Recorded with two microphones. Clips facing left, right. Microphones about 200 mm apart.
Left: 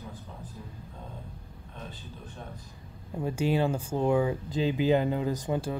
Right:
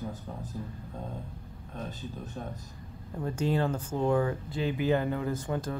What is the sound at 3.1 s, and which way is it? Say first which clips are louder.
Speech: left 2 dB; 10° left (ahead or behind).